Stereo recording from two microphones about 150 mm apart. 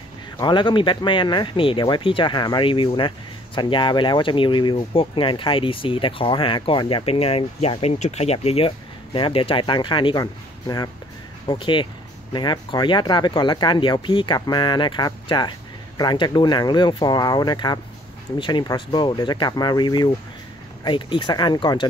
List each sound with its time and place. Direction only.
0.4 s speech: 30° left (ahead or behind)